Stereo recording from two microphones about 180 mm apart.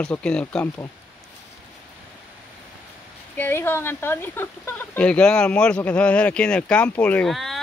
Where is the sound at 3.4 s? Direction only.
10° left (ahead or behind).